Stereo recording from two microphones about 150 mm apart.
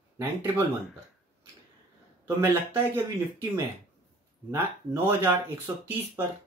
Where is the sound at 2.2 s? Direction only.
20° right (ahead or behind).